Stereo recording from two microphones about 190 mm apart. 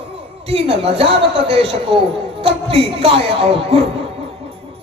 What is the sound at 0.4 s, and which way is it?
Speech, 30° right (ahead or behind).